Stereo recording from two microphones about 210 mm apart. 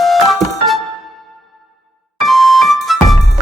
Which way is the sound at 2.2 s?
Centre (ahead or behind).